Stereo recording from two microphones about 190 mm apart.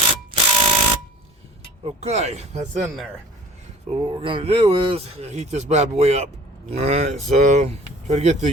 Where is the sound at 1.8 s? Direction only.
35° right (ahead or behind).